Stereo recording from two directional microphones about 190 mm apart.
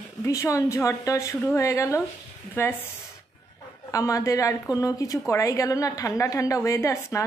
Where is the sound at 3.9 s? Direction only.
15° left (ahead or behind).